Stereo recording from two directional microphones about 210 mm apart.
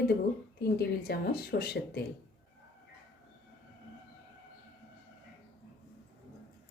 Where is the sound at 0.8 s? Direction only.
50° left (ahead or behind).